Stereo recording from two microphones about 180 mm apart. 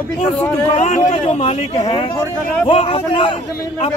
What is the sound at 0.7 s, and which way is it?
Speech, 40° left (ahead or behind).